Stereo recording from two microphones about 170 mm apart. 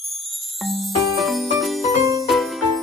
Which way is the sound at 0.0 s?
Centre (ahead or behind).